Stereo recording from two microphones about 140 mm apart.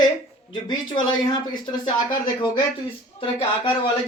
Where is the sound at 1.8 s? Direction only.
35° left (ahead or behind).